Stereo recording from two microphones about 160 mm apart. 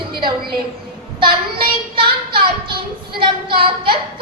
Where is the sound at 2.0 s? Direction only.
30° right (ahead or behind).